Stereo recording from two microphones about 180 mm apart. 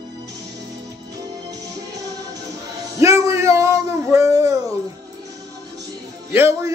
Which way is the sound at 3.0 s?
15° right (ahead or behind).